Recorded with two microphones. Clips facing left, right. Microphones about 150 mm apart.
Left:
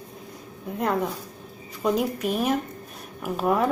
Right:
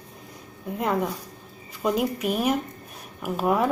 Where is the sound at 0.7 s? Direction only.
Centre (ahead or behind).